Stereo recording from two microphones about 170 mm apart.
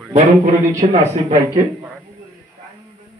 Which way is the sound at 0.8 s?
35° right (ahead or behind).